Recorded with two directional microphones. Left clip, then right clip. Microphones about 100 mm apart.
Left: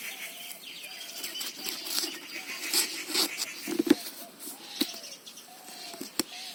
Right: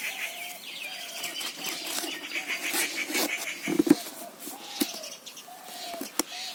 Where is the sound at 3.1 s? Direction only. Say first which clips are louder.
Right 1 dB; 25° right (ahead or behind).